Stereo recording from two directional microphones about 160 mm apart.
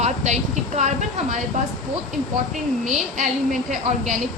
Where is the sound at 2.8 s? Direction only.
50° right (ahead or behind).